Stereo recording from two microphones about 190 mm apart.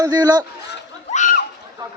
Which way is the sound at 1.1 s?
40° left (ahead or behind).